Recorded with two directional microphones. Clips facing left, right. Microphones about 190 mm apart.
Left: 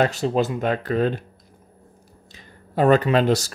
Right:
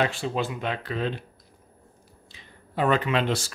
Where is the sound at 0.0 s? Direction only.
40° left (ahead or behind).